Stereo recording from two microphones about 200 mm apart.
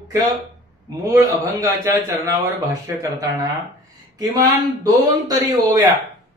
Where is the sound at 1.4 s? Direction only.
15° right (ahead or behind).